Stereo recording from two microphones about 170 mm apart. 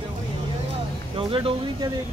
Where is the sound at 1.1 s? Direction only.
30° right (ahead or behind).